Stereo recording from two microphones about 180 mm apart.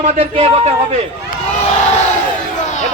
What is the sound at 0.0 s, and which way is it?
Speech, 35° right (ahead or behind).